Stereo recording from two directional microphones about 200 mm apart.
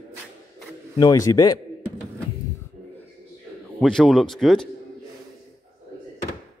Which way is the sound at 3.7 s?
5° left (ahead or behind).